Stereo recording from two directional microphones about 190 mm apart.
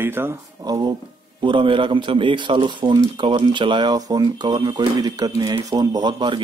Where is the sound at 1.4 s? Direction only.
25° right (ahead or behind).